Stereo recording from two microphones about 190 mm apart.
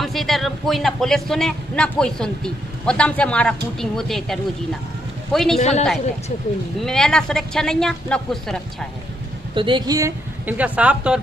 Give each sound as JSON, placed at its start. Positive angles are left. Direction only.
{"t": 0.0, "sound": "speech", "side_deg": 0}
{"t": 5.6, "sound": "a man's voice", "side_deg": 35}
{"t": 6.9, "sound": "speech", "side_deg": 5}
{"t": 9.6, "sound": "speech", "side_deg": -25}